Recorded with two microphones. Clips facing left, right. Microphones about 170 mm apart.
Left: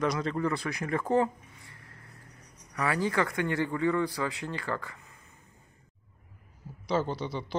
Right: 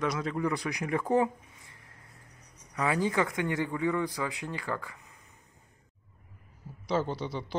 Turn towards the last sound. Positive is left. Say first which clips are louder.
# left 1 dB
turn(degrees=-5)  # may be behind; listen again after turning